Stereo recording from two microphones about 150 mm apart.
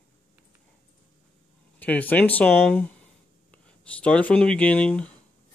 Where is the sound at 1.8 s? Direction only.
10° left (ahead or behind).